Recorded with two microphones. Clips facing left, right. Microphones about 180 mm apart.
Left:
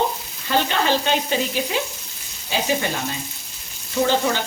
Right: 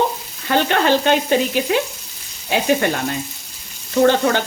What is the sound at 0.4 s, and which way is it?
Frying, 55° right (ahead or behind).